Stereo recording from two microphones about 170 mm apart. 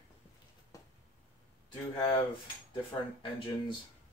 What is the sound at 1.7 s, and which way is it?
Speech, 25° left (ahead or behind).